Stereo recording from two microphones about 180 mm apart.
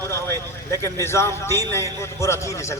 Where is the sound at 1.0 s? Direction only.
15° left (ahead or behind).